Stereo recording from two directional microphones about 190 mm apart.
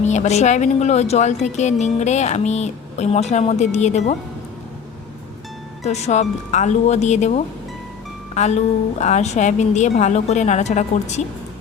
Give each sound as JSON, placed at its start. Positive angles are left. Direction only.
{"t": 0.0, "sound": "speech", "side_deg": 35}
{"t": 5.8, "sound": "speech", "side_deg": 35}